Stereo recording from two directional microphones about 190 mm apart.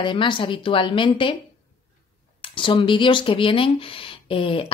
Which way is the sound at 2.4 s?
25° left (ahead or behind).